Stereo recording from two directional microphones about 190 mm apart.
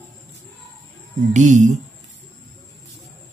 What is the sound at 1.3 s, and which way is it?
Speech, 40° right (ahead or behind).